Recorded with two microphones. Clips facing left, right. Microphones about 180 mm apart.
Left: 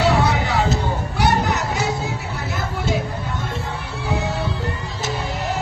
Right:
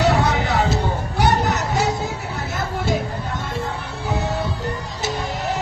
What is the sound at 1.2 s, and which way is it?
Children playing, 45° right (ahead or behind).